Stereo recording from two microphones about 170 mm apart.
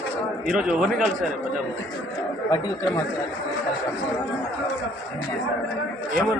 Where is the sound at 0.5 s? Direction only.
5° right (ahead or behind).